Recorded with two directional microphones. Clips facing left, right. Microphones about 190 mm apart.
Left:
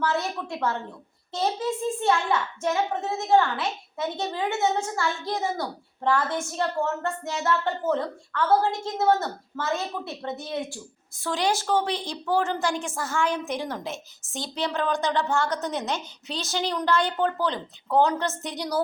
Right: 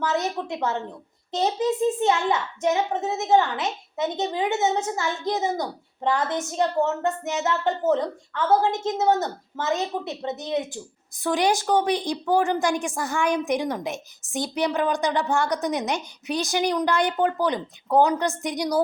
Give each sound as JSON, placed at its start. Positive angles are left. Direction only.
{"t": 0.0, "sound": "a child's voice", "side_deg": -20}